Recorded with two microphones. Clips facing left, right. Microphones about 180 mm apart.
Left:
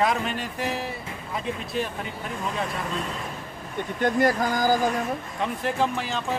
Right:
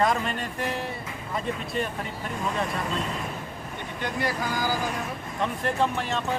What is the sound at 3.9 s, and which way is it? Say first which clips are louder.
Speech: left 8 dB; 45° left (ahead or behind).